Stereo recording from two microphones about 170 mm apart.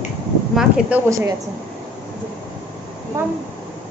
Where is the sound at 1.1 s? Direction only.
20° right (ahead or behind).